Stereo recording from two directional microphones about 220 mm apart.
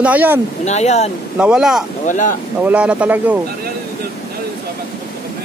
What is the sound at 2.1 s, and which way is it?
Speech, 35° left (ahead or behind).